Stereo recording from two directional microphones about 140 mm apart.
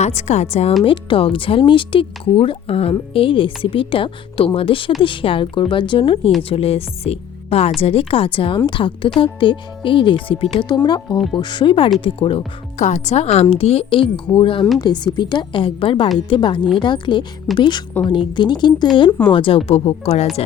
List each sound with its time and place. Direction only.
0.0 s a woman's voice: 50° left (ahead or behind)
0.9 s speech: 40° left (ahead or behind)
12.8 s a woman's voice: 55° left (ahead or behind)